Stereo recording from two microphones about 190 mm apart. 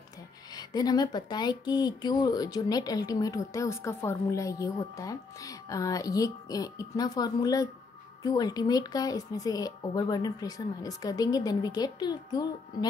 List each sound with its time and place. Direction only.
0.6 s speech: 20° left (ahead or behind)